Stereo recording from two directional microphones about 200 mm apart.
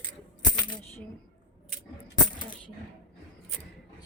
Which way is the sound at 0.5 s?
20° left (ahead or behind).